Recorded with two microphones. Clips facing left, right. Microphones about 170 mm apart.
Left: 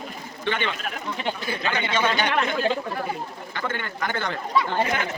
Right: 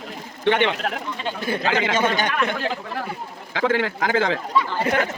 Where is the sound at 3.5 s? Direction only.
90° right.